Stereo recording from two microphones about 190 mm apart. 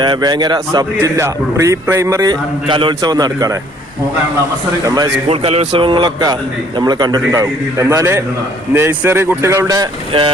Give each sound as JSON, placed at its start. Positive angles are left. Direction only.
{"t": 0.0, "sound": "a man's voice", "side_deg": -20}
{"t": 5.3, "sound": "a man's voice", "side_deg": -35}